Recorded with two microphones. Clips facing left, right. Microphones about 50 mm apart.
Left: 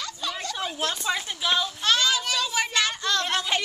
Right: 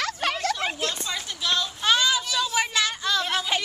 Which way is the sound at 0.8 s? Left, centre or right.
Left.